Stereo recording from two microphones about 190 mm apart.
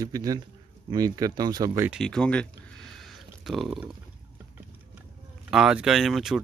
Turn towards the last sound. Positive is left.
turn(degrees=0)  # may be behind; listen again after turning